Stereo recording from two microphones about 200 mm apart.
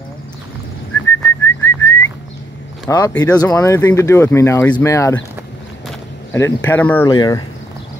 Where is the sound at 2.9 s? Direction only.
15° left (ahead or behind).